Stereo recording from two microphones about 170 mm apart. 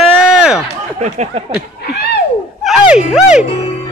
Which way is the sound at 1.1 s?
40° right (ahead or behind).